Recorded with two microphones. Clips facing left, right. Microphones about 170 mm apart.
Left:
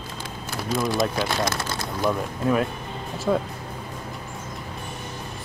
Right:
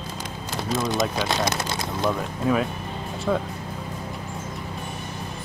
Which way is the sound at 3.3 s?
5° left (ahead or behind).